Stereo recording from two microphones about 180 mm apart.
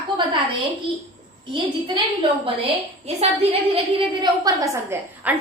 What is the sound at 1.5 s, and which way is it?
Speech, 25° right (ahead or behind).